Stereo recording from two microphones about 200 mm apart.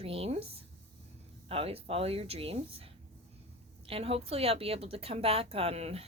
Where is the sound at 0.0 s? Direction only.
30° right (ahead or behind).